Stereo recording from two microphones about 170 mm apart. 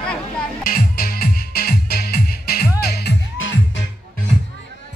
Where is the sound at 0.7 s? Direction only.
60° left (ahead or behind).